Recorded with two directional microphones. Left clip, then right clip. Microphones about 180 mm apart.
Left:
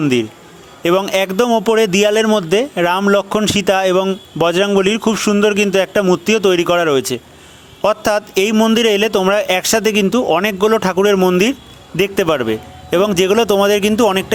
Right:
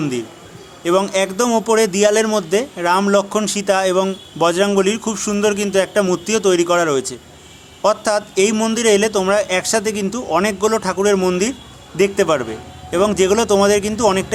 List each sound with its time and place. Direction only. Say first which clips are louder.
0.0 s a man's voice: left 7 dB; 35° left (ahead or behind)